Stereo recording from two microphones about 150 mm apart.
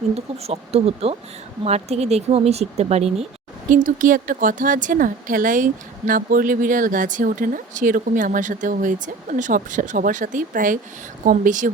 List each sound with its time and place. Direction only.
0.1 s speech: 45° right (ahead or behind)
3.7 s a woman's voice: 60° right (ahead or behind)